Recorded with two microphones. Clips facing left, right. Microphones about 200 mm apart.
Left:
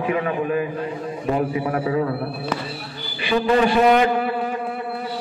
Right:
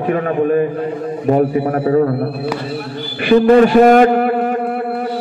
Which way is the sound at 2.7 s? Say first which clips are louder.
Right 10 dB; 55° right (ahead or behind).